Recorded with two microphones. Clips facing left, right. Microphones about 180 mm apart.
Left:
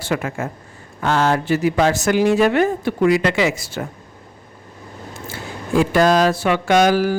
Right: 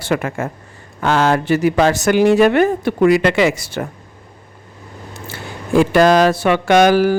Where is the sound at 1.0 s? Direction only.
90° right; by 3.9 s 55° right (ahead or behind).